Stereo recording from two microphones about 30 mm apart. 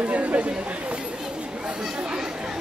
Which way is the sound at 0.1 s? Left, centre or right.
Right.